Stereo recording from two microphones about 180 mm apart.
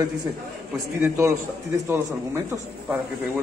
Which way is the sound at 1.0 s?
15° right (ahead or behind).